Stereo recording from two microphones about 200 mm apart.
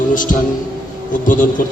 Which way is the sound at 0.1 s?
40° left (ahead or behind).